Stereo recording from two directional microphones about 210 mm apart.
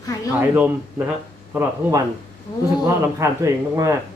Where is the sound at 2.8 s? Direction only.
15° right (ahead or behind).